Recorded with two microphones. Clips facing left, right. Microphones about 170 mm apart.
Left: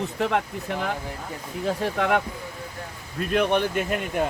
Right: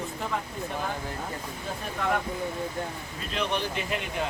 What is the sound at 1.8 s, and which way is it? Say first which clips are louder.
Speech: left 5 dB; 85° left.